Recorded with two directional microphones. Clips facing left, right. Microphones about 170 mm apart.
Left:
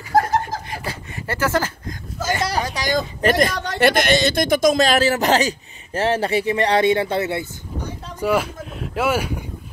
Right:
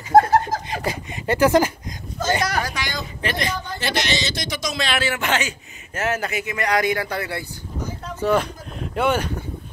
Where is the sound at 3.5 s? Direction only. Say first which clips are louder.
Left 10 dB; 75° left (ahead or behind).